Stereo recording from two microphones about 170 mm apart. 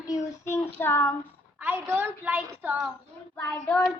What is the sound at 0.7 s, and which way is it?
Speech, 10° left (ahead or behind).